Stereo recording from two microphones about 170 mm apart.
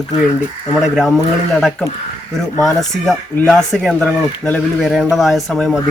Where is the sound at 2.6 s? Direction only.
Centre (ahead or behind).